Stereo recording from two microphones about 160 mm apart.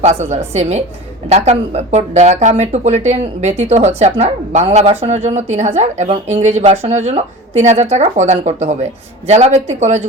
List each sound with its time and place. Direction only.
0.0 s speech: 45° right (ahead or behind)